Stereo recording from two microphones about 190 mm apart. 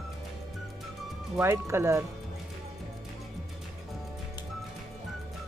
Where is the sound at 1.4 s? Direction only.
15° right (ahead or behind).